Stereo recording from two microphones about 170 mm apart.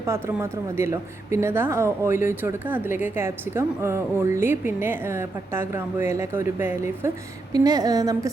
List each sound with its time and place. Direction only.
0.0 s a woman's voice: 15° right (ahead or behind)